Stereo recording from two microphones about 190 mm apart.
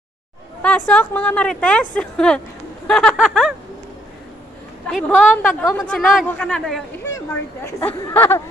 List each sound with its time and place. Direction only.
0.6 s a woman's voice: 5° left (ahead or behind)
4.8 s a woman's voice: 5° left (ahead or behind)